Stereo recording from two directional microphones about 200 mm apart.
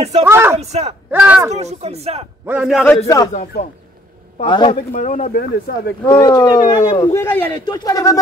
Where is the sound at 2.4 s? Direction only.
5° right (ahead or behind).